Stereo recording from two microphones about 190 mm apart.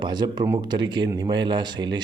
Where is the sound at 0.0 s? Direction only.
20° right (ahead or behind).